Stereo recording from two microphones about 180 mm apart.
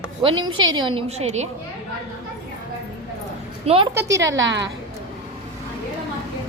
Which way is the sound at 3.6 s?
35° right (ahead or behind).